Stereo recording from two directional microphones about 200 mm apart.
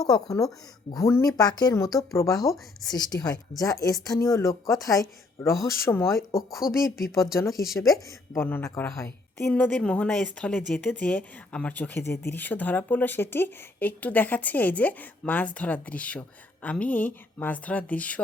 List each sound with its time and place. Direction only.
0.3 s a woman's voice: 15° left (ahead or behind)
6.6 s speech: 5° right (ahead or behind)
7.0 s speech: 15° left (ahead or behind)